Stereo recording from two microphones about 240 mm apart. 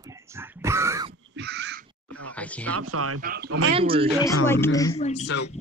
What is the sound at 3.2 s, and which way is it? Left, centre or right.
Speech, right.